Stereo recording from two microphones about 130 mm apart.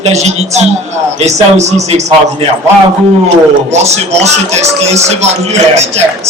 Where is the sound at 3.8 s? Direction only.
55° right (ahead or behind).